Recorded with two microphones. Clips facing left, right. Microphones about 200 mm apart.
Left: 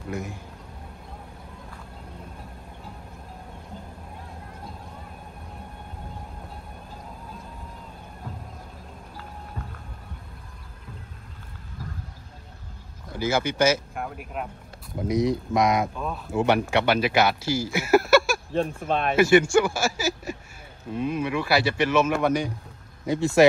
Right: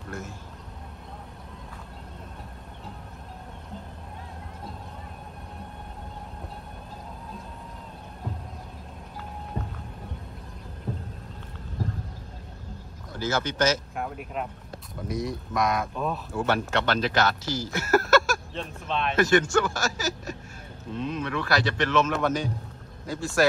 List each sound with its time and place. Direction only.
0.1 s a man's voice: 15° left (ahead or behind)
13.1 s speech: 10° left (ahead or behind)
15.0 s speech: 20° left (ahead or behind)
15.9 s speech: centre (ahead or behind)
16.3 s speech: 20° left (ahead or behind)
18.5 s speech: 50° left (ahead or behind)
19.1 s speech: 10° left (ahead or behind)